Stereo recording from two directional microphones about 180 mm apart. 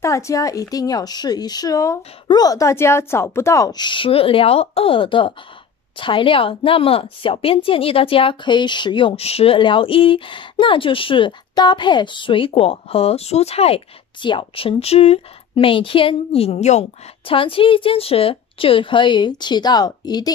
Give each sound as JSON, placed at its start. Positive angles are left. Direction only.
{"t": 0.0, "sound": "a woman's voice", "side_deg": 15}